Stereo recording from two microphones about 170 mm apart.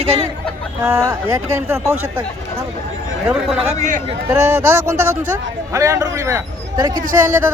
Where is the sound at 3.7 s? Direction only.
45° right (ahead or behind).